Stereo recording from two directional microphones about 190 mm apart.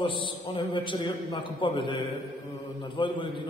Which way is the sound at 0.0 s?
25° left (ahead or behind).